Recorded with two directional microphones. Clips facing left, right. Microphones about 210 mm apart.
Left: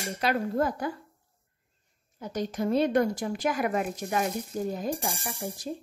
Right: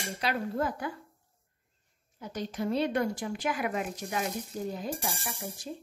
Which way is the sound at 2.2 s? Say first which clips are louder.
Left 4 dB; 45° left (ahead or behind).